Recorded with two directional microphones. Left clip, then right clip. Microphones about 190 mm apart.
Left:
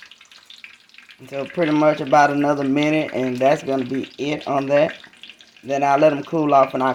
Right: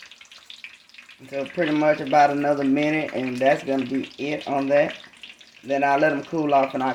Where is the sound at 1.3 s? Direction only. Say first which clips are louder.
Left 3 dB; 45° left (ahead or behind).